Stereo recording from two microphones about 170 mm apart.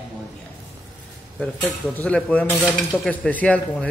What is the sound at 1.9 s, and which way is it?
Speech, 10° left (ahead or behind).